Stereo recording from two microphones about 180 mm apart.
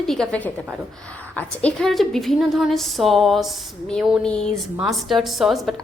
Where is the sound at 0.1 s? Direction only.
5° left (ahead or behind).